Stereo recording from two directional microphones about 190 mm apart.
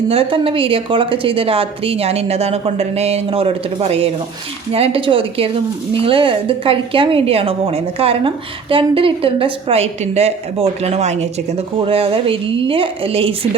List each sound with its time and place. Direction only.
0.1 s a woman's voice: 30° right (ahead or behind)